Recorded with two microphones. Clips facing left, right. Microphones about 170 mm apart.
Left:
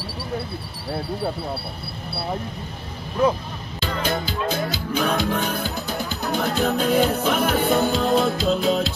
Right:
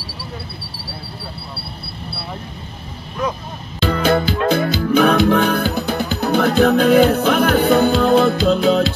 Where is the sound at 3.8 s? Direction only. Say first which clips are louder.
Right 9 dB; 70° right (ahead or behind).